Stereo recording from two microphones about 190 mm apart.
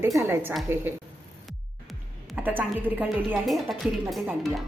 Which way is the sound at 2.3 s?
10° right (ahead or behind).